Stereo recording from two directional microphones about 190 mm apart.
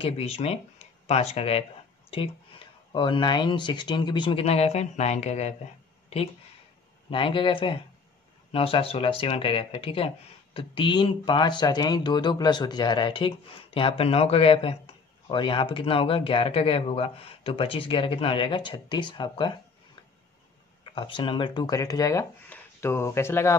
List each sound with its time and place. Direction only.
0.0 s speech: 30° left (ahead or behind)
7.1 s speech: 25° left (ahead or behind)
20.9 s speech: 25° left (ahead or behind)